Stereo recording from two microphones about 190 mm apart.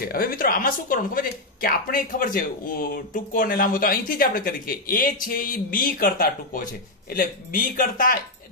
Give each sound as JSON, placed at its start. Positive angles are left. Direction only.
{"t": 0.0, "sound": "speech", "side_deg": 50}